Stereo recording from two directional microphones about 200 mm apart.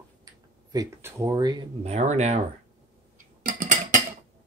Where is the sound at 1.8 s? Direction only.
35° right (ahead or behind).